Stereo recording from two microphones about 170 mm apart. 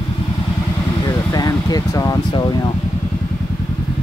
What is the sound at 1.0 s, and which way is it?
Speech, 20° left (ahead or behind).